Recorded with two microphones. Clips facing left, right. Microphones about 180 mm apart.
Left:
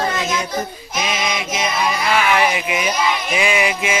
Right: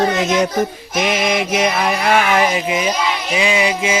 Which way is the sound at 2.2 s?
40° right (ahead or behind).